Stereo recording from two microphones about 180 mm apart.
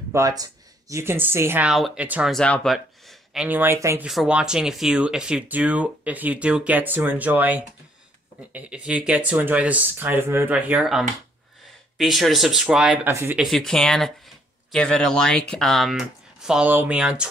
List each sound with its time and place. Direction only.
0.1 s speech: 20° right (ahead or behind)
2.3 s speech: 5° left (ahead or behind); by 4.1 s 15° right (ahead or behind)
4.1 s speech: 5° right (ahead or behind)
13.5 s speech: centre (ahead or behind)